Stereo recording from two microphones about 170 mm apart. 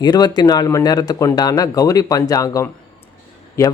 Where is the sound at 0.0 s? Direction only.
25° left (ahead or behind).